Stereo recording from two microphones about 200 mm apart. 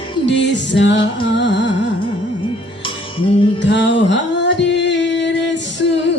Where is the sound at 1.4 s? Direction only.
60° left (ahead or behind).